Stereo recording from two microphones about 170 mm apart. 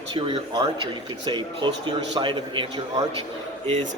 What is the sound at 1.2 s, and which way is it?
A man's voice, 25° right (ahead or behind).